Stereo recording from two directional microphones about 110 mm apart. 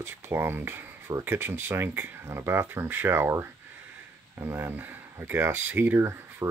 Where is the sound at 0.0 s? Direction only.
20° right (ahead or behind).